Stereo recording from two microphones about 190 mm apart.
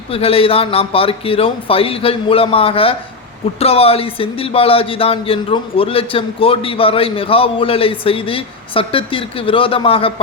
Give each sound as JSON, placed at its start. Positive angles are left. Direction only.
{"t": 0.1, "sound": "speech", "side_deg": 30}